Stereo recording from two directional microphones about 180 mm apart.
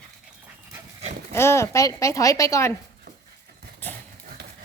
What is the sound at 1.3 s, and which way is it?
Speech, 15° left (ahead or behind).